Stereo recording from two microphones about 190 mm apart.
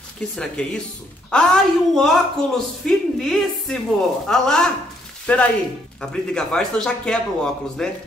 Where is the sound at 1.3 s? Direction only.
5° left (ahead or behind).